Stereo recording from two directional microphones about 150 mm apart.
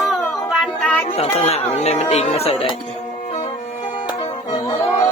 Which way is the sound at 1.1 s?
45° left (ahead or behind).